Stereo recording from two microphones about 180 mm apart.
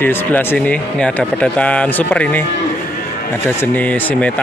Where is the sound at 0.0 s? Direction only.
10° left (ahead or behind).